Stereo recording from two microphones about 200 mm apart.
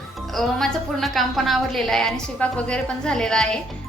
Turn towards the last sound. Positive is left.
turn(degrees=5)  # may be behind; listen again after turning